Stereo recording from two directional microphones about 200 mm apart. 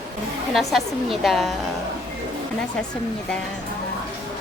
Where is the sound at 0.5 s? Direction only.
Centre (ahead or behind).